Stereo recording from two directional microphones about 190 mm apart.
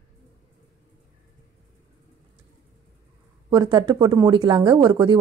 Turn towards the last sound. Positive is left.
turn(degrees=-20)  # may be behind; listen again after turning